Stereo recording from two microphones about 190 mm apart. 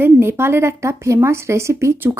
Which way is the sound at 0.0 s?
10° right (ahead or behind).